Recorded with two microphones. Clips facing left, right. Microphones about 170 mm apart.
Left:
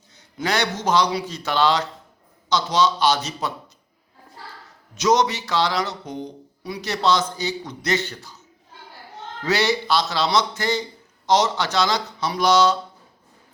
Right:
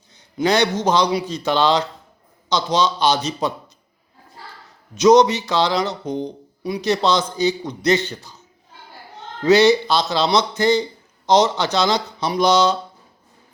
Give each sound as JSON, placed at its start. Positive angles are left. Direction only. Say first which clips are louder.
{"t": 0.2, "sound": "speech", "louder": "right 6 dB", "side_deg": -20}
{"t": 4.9, "sound": "speech", "louder": "right 7 dB", "side_deg": -20}
{"t": 9.4, "sound": "speech", "louder": "right 9 dB", "side_deg": -20}